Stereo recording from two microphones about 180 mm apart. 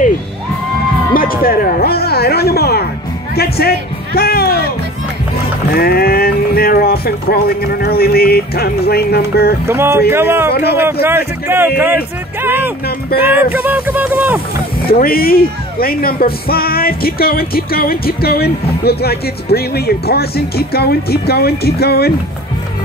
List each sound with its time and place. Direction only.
1.1 s speech: 55° left (ahead or behind)
5.8 s speech: 55° left (ahead or behind)
9.7 s speech: 15° right (ahead or behind)
14.8 s speech: 55° left (ahead or behind)